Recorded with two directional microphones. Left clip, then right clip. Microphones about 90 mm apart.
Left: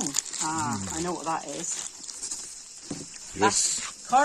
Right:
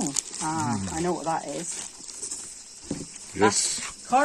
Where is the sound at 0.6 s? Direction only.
90° right.